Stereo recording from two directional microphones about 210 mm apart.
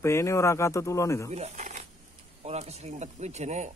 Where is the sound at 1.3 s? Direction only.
30° right (ahead or behind).